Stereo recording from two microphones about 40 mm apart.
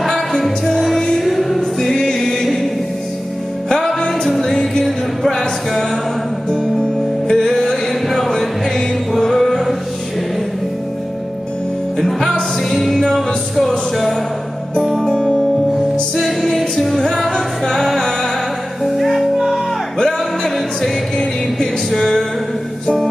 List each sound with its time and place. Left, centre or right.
0.4 s music: centre
1.6 s music: centre
4.3 s music: centre
12.0 s music: centre
16.2 s music: centre
20.0 s music: centre
21.9 s music: centre